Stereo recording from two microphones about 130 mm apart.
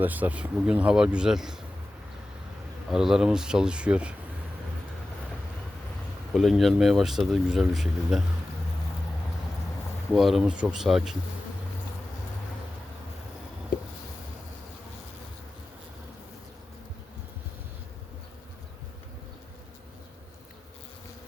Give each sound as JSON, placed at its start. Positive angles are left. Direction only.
{"t": 0.0, "sound": "speech", "side_deg": -15}
{"t": 2.9, "sound": "speech", "side_deg": -5}
{"t": 6.3, "sound": "speech", "side_deg": 0}
{"t": 10.1, "sound": "speech", "side_deg": 0}